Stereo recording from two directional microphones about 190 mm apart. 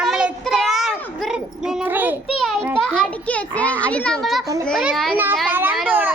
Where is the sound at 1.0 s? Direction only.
Centre (ahead or behind).